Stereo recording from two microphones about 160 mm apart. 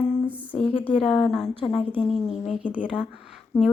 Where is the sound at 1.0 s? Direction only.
5° left (ahead or behind).